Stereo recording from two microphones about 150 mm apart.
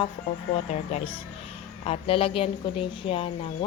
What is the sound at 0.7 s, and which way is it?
Speech, 45° left (ahead or behind).